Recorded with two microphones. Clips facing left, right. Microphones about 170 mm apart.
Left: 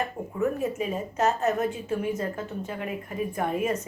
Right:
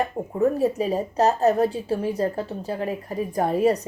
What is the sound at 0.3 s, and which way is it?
A woman's voice, 35° right (ahead or behind).